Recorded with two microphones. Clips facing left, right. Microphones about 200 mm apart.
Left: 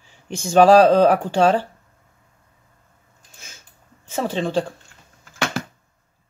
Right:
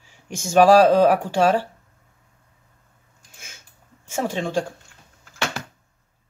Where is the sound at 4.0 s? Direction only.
10° right (ahead or behind).